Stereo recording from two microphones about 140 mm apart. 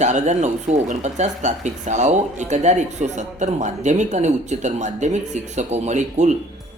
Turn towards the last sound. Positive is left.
turn(degrees=-55)  # may be behind; listen again after turning